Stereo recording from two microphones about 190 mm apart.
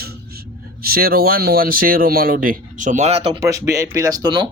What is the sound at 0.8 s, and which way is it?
Speech, 50° right (ahead or behind).